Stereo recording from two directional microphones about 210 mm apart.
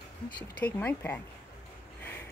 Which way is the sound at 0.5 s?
10° left (ahead or behind).